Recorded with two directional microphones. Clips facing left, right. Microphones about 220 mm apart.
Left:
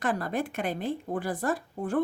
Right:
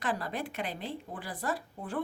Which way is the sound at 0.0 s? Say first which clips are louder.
Left 5 dB; 50° left (ahead or behind).